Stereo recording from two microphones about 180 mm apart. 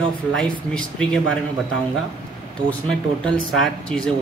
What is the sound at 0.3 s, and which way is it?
Speech, 5° left (ahead or behind).